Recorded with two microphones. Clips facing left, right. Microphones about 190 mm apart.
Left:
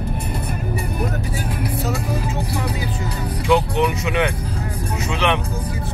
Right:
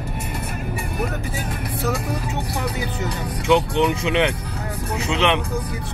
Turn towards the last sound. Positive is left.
turn(degrees=-20)  # may be behind; listen again after turning